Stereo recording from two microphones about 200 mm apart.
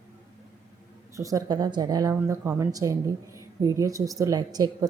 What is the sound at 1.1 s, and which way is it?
A woman's voice, 15° right (ahead or behind).